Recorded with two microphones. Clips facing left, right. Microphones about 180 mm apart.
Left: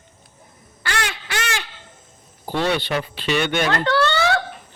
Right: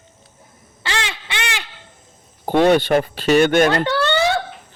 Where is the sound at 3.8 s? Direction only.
15° right (ahead or behind).